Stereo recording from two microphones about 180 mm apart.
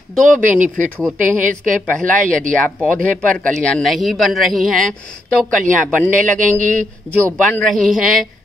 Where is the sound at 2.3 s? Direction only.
5° left (ahead or behind).